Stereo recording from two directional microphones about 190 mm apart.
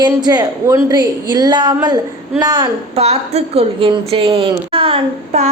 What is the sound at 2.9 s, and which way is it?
A woman's voice, 35° right (ahead or behind).